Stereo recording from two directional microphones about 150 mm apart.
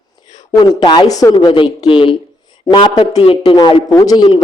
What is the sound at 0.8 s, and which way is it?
A man's voice, 30° left (ahead or behind).